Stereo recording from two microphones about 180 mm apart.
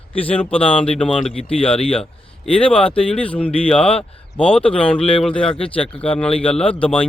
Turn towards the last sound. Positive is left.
turn(degrees=5)  # may be behind; listen again after turning